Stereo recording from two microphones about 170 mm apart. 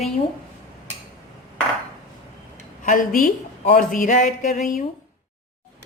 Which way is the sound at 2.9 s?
55° left (ahead or behind).